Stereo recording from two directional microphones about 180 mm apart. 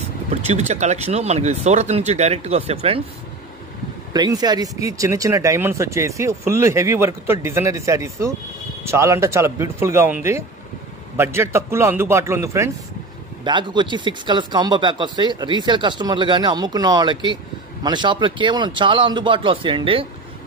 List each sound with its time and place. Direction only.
0.0 s speech: 35° right (ahead or behind)
4.1 s speech: 20° right (ahead or behind)
13.4 s speech: 25° right (ahead or behind)